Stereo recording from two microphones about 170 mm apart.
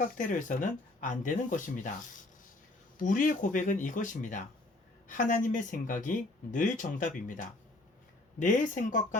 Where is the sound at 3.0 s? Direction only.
50° left (ahead or behind).